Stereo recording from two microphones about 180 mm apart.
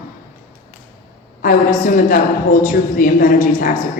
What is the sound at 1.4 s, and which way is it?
A woman's voice, 50° left (ahead or behind).